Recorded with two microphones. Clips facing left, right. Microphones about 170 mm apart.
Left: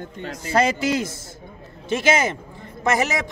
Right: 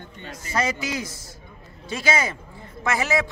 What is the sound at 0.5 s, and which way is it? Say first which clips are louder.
Speech: left 6 dB; 30° left (ahead or behind).